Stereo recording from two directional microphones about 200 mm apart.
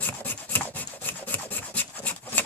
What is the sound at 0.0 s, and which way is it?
Rub, 10° left (ahead or behind).